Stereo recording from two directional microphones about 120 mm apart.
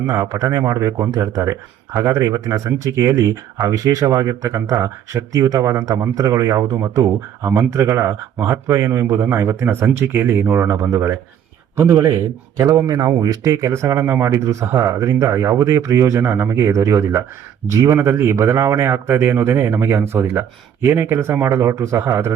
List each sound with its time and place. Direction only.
0.0 s speech: 30° right (ahead or behind)